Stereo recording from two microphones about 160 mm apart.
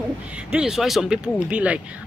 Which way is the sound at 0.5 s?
5° right (ahead or behind).